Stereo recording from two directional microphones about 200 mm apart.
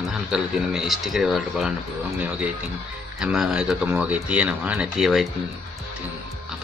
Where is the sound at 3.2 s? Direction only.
5° right (ahead or behind).